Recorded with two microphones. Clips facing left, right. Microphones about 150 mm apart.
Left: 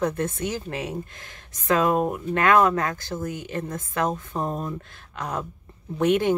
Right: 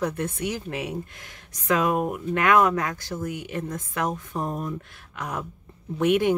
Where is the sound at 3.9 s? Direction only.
30° left (ahead or behind).